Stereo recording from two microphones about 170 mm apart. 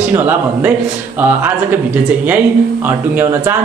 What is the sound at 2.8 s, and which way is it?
Speech, 10° right (ahead or behind).